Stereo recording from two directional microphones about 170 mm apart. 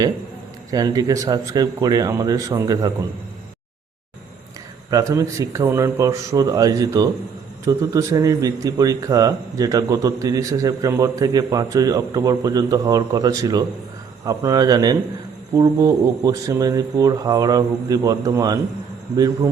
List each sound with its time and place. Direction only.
0.7 s speech: 20° right (ahead or behind)
4.9 s speech: 20° right (ahead or behind)